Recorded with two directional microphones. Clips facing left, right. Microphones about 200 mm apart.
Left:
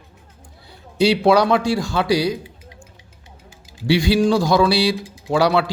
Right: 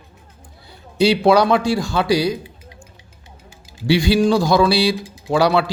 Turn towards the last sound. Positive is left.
turn(degrees=-30)  # may be behind; listen again after turning